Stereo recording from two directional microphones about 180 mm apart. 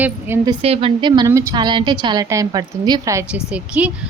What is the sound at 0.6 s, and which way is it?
A woman's voice, 30° right (ahead or behind).